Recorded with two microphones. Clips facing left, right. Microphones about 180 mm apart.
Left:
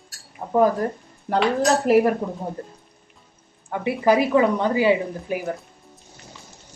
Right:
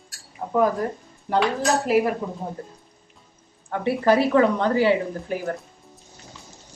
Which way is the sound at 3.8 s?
10° left (ahead or behind).